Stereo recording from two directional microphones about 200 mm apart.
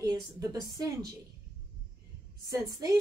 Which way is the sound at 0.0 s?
20° right (ahead or behind).